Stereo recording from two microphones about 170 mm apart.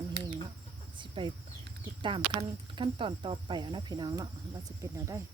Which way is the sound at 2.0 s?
30° right (ahead or behind).